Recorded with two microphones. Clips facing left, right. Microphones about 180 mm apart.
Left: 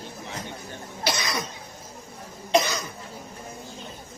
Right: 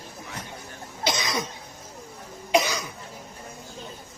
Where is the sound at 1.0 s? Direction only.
20° right (ahead or behind).